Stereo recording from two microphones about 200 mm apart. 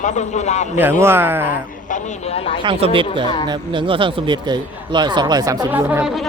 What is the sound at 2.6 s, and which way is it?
A man's voice, 25° right (ahead or behind).